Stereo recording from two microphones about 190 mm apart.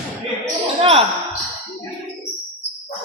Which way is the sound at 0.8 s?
30° right (ahead or behind).